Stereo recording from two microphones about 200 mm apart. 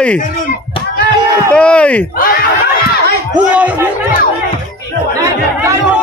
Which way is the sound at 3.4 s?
5° right (ahead or behind).